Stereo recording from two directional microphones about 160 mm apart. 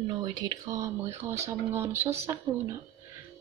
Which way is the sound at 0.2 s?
25° right (ahead or behind).